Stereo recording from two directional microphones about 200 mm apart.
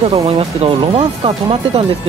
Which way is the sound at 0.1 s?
30° right (ahead or behind).